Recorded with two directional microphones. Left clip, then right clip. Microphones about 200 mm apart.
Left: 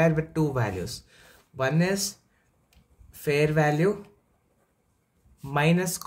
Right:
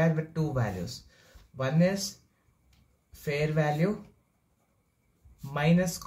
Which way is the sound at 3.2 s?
50° left (ahead or behind).